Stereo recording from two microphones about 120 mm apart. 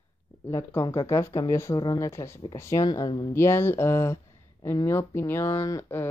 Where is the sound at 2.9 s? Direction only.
40° left (ahead or behind).